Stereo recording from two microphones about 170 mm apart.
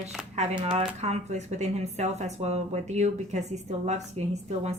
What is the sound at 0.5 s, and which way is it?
Speech, 30° right (ahead or behind).